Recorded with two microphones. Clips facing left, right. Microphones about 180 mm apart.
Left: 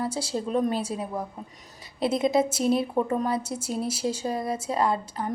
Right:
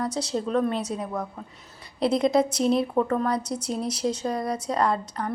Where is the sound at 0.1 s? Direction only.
5° left (ahead or behind).